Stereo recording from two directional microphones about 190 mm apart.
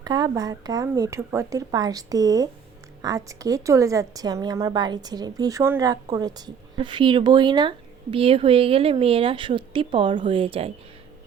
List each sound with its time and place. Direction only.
0.0 s a woman's voice: 20° right (ahead or behind)